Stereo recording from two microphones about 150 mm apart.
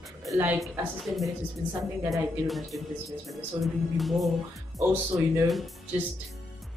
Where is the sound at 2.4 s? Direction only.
Centre (ahead or behind).